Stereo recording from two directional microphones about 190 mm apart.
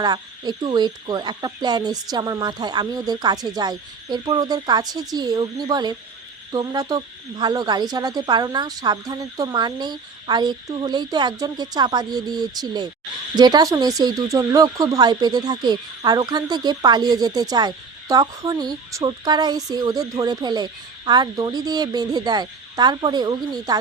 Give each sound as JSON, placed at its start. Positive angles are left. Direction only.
{"t": 0.0, "sound": "speech", "side_deg": -20}